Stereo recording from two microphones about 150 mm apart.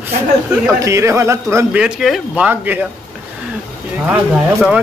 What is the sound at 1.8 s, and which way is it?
Speech, 5° right (ahead or behind).